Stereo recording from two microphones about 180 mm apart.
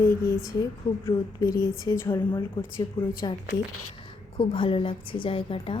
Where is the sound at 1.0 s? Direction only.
15° left (ahead or behind).